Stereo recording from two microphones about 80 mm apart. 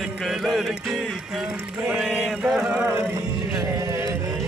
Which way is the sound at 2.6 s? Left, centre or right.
Centre.